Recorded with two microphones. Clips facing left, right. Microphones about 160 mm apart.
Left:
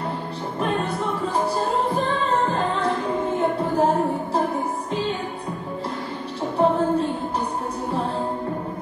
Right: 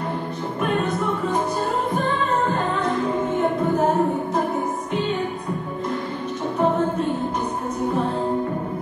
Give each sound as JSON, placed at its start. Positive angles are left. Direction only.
{"t": 0.6, "sound": "music", "side_deg": 30}
{"t": 6.6, "sound": "music", "side_deg": 35}